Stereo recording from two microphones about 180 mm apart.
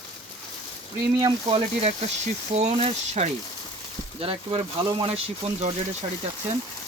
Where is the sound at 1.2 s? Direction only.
30° right (ahead or behind).